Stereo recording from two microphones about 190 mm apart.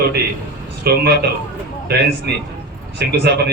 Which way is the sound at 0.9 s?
55° right (ahead or behind).